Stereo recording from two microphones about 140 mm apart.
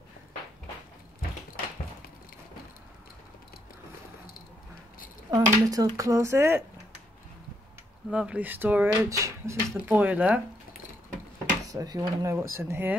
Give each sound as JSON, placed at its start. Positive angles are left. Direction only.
{"t": 5.3, "sound": "speech", "side_deg": -25}
{"t": 8.1, "sound": "speech", "side_deg": -5}
{"t": 11.6, "sound": "speech", "side_deg": -25}